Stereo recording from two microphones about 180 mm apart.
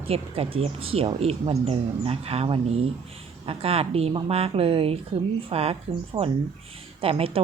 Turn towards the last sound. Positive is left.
turn(degrees=-30)  # may be behind; listen again after turning